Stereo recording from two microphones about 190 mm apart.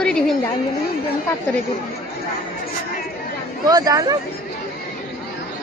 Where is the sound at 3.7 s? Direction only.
20° right (ahead or behind).